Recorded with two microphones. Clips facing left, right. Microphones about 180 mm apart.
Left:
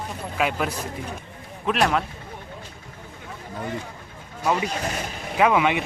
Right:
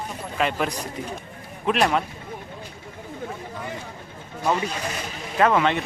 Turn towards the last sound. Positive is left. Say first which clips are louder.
# even
turn(degrees=10)  # may be behind; listen again after turning